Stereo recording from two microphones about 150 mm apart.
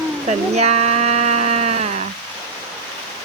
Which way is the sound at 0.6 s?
45° right (ahead or behind).